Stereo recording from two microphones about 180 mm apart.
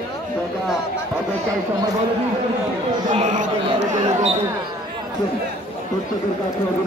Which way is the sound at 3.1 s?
45° right (ahead or behind).